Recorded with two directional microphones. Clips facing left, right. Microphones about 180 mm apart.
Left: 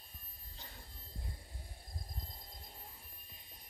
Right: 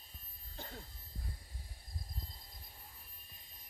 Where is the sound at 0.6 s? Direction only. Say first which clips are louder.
Right 7 dB; 50° right (ahead or behind).